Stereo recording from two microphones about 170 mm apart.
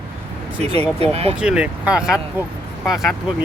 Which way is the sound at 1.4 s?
5° right (ahead or behind).